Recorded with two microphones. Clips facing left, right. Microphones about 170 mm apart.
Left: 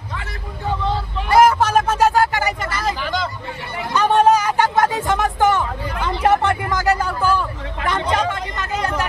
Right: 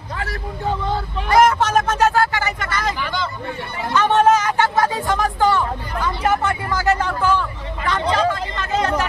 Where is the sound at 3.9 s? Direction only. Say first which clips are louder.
Left 1 dB; 15° left (ahead or behind).